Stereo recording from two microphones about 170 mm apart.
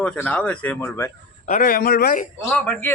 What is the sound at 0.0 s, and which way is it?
A man's voice, 5° left (ahead or behind).